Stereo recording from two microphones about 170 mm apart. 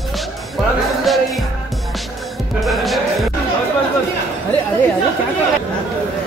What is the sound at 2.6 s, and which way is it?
Music, centre (ahead or behind).